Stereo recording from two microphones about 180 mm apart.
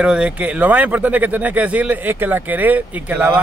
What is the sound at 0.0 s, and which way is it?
Speech, 5° right (ahead or behind).